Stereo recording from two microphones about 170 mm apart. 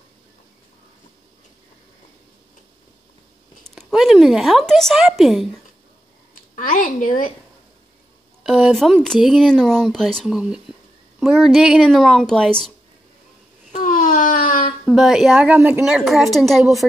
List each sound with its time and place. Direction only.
3.6 s speech: centre (ahead or behind)
6.5 s a woman's voice: 50° left (ahead or behind)
8.5 s speech: centre (ahead or behind)
13.7 s a sound: 50° left (ahead or behind)
14.9 s speech: centre (ahead or behind)